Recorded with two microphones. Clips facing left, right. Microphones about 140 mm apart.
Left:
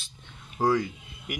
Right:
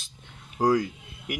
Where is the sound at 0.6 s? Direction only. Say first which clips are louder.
Right 2 dB; 15° right (ahead or behind).